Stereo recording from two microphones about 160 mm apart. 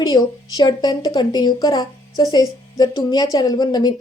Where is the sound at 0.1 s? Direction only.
25° left (ahead or behind).